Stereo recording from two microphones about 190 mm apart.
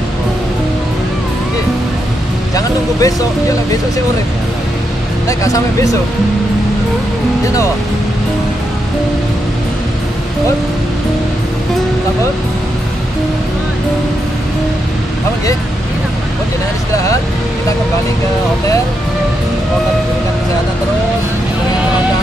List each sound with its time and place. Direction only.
2.5 s speech: 20° left (ahead or behind)
5.4 s speech: 15° left (ahead or behind)